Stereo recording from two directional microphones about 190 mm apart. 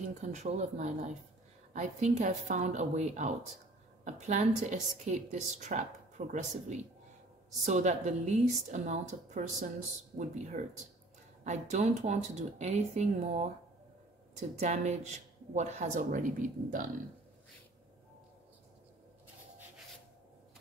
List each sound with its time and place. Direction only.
0.1 s a woman's voice: 35° right (ahead or behind)
14.6 s a woman's voice: 35° right (ahead or behind)